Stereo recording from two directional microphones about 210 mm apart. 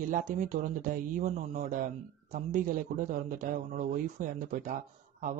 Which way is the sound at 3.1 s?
35° right (ahead or behind).